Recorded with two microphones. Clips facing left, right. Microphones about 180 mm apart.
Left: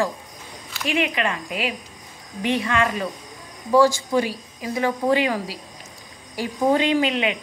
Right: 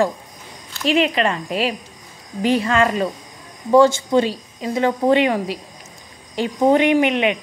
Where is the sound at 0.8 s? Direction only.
25° right (ahead or behind).